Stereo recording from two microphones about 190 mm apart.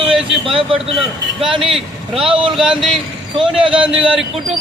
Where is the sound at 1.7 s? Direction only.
Centre (ahead or behind).